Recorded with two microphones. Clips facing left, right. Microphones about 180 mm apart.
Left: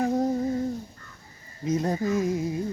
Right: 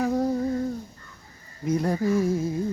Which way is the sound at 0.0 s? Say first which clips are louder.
Even; 40° left (ahead or behind).